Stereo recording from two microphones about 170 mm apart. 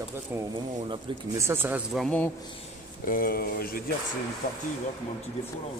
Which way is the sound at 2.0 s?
10° left (ahead or behind).